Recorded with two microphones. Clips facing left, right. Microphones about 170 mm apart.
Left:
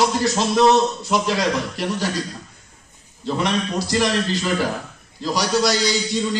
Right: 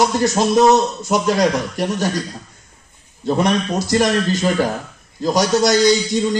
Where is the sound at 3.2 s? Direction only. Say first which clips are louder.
Right 5 dB; 45° right (ahead or behind).